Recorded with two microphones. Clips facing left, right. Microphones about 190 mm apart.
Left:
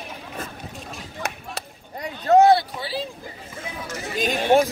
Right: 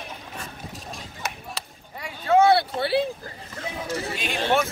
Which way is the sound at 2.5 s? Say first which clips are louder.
Right 6 dB; 60° right (ahead or behind).